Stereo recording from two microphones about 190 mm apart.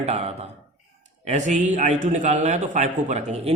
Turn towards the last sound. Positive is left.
turn(degrees=-40)  # may be behind; listen again after turning